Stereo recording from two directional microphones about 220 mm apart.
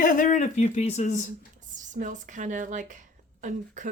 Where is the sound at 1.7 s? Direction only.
35° right (ahead or behind).